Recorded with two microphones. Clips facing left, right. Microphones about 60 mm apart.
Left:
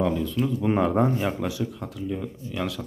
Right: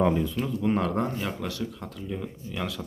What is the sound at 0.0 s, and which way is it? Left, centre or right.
Speech, centre.